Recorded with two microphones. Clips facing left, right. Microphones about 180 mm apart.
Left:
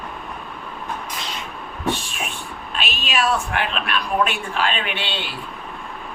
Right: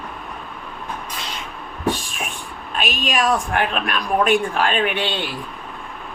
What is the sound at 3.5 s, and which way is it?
A man's voice, 45° right (ahead or behind).